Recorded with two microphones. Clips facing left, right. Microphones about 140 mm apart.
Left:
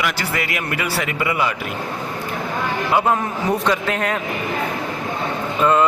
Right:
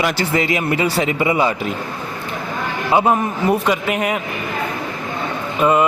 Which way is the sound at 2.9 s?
20° right (ahead or behind).